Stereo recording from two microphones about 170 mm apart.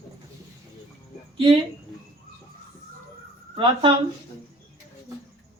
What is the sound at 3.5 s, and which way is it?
Speech, 30° right (ahead or behind).